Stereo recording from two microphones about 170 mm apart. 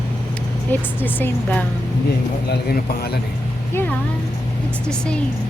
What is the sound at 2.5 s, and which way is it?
Speech, 65° left (ahead or behind).